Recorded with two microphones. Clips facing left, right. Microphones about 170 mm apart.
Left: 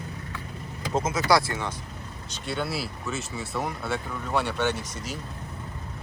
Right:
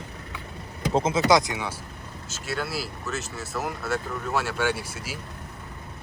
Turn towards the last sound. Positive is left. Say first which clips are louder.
# right 1 dB
turn(degrees=-5)  # may be behind; listen again after turning